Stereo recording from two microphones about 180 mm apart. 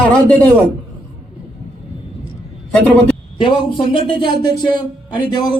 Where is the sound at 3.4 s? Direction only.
25° left (ahead or behind).